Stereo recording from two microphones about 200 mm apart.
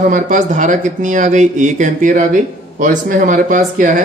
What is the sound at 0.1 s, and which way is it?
Speech, 40° right (ahead or behind).